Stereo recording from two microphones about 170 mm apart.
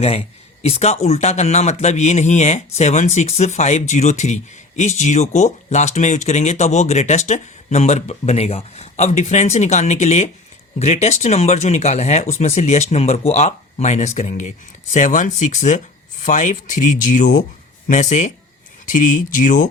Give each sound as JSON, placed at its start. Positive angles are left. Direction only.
{"t": 0.6, "sound": "speech", "side_deg": 40}